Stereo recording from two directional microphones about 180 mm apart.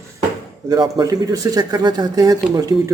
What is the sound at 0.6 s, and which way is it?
Speech, 20° right (ahead or behind).